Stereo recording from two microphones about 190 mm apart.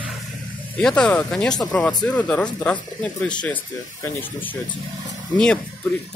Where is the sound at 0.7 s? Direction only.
5° left (ahead or behind).